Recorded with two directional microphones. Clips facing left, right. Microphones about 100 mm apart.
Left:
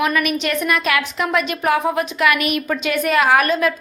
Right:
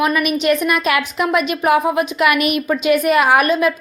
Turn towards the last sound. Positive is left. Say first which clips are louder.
# right 2 dB
turn(degrees=-15)  # may be behind; listen again after turning